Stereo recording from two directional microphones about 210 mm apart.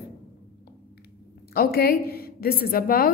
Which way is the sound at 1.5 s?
45° left (ahead or behind).